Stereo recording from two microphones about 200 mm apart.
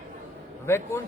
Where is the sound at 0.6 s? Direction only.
10° left (ahead or behind).